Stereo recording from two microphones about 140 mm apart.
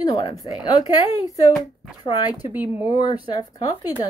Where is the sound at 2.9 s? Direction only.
30° left (ahead or behind).